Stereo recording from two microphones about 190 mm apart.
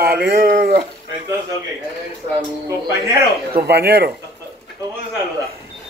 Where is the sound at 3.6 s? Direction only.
60° right (ahead or behind).